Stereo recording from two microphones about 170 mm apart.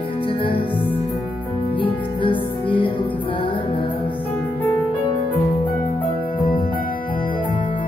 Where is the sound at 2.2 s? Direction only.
30° left (ahead or behind).